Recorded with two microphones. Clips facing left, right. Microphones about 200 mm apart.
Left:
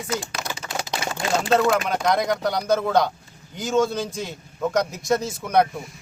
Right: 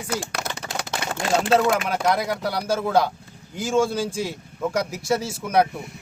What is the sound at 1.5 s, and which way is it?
A man's voice, 5° right (ahead or behind).